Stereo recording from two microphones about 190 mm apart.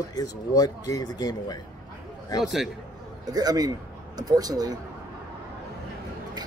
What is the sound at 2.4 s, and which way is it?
Speech, centre (ahead or behind).